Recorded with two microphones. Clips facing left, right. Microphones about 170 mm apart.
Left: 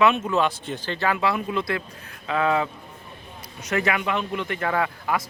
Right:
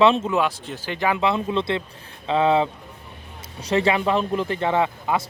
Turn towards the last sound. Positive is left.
turn(degrees=-25)  # may be behind; listen again after turning